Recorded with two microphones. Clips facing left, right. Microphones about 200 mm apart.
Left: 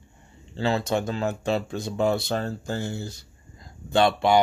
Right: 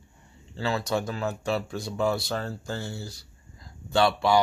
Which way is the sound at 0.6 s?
25° left (ahead or behind).